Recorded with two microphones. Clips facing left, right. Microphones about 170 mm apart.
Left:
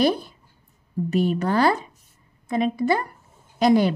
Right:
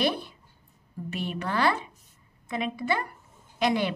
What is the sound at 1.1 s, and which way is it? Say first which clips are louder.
A woman's voice: left 9 dB; 40° left (ahead or behind).